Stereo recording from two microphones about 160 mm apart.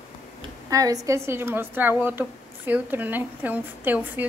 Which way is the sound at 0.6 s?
20° right (ahead or behind).